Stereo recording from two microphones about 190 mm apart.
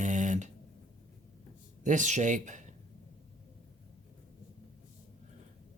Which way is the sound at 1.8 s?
40° right (ahead or behind).